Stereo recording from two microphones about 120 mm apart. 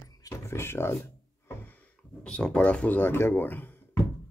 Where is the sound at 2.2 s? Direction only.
10° left (ahead or behind).